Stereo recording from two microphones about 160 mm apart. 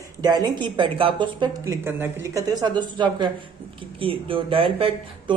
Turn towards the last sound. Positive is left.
turn(degrees=-35)  # may be behind; listen again after turning